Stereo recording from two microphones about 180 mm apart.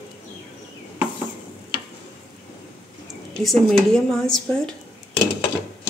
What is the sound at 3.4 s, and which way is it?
A woman's voice, 5° left (ahead or behind).